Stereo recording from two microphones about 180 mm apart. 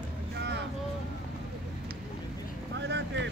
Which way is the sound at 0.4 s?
70° right (ahead or behind).